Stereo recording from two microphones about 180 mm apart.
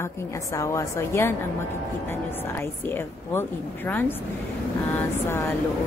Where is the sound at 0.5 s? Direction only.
15° left (ahead or behind).